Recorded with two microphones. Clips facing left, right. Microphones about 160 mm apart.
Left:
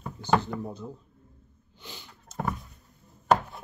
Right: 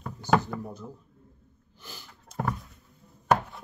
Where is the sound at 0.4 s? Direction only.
20° left (ahead or behind).